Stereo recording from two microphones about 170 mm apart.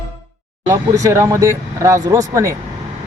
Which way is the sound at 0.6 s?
15° right (ahead or behind).